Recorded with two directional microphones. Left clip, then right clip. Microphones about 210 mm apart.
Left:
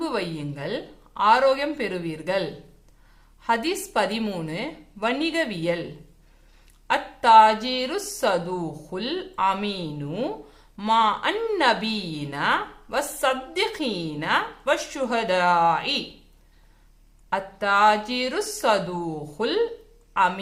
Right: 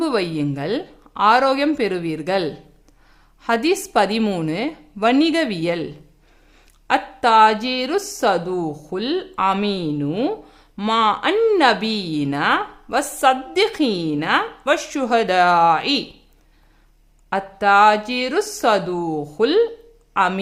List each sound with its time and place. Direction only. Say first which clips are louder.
0.0 s a woman's voice: right 7 dB; 50° right (ahead or behind)
17.2 s a woman's voice: right 7 dB; 45° right (ahead or behind)